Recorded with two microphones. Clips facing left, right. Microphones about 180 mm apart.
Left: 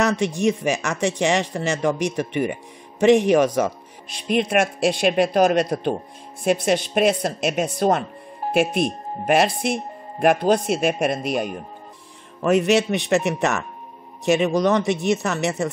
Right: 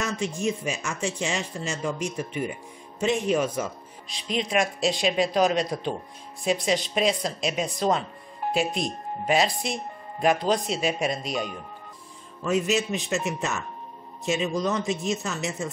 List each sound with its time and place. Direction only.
0.0 s speech: 70° left (ahead or behind); by 11.4 s 55° left (ahead or behind)
12.4 s speech: 70° left (ahead or behind)